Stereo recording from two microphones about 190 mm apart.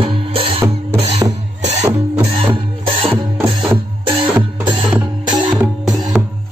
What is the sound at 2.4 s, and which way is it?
Music, 25° right (ahead or behind).